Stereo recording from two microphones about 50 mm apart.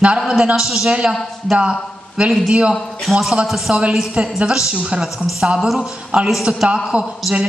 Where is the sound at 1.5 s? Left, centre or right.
Centre.